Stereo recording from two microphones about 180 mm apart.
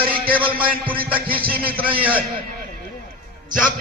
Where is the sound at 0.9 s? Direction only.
55° right (ahead or behind).